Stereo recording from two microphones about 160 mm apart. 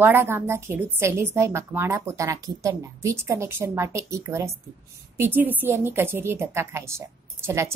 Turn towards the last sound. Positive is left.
turn(degrees=-15)  # may be behind; listen again after turning